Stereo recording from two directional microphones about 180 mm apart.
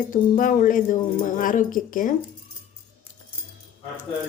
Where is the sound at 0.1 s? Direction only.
50° left (ahead or behind).